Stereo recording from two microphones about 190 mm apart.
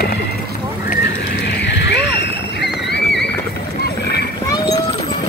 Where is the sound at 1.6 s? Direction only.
70° left (ahead or behind).